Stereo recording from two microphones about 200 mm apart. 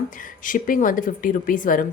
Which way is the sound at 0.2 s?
40° left (ahead or behind).